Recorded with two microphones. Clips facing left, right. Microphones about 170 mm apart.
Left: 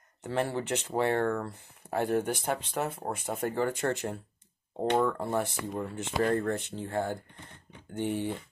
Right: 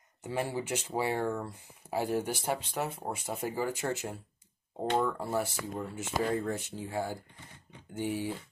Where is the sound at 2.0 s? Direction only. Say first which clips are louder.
Left 3 dB; 55° left (ahead or behind).